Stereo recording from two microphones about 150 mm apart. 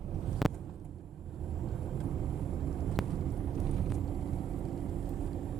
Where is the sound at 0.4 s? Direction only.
Centre (ahead or behind).